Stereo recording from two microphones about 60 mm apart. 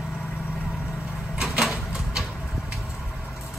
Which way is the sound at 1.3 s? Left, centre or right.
Centre.